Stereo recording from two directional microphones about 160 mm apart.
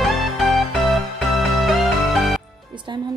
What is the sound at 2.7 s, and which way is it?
Speech, 30° right (ahead or behind).